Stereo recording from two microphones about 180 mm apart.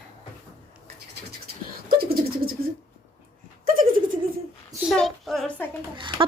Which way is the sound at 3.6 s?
50° right (ahead or behind).